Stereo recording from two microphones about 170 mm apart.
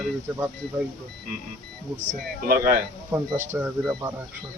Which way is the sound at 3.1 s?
15° right (ahead or behind).